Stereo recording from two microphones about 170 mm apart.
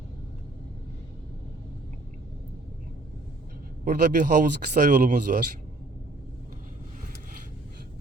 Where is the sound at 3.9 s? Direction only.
50° right (ahead or behind).